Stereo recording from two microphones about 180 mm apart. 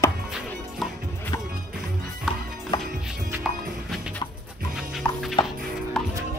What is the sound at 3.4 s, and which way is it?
Music, 5° right (ahead or behind).